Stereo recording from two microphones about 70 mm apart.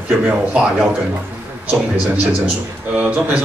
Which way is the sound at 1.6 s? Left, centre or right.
Right.